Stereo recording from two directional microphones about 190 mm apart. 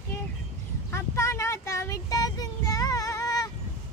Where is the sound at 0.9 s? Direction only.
15° left (ahead or behind).